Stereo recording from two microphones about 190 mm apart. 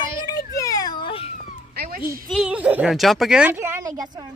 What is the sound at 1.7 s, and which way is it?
Cat, 55° right (ahead or behind).